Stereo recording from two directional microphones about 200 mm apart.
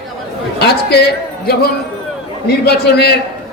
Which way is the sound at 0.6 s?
55° left (ahead or behind).